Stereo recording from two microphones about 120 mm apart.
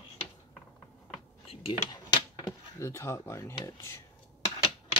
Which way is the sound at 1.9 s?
35° left (ahead or behind).